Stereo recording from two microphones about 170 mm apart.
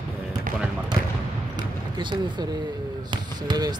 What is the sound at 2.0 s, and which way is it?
Speech, 25° right (ahead or behind).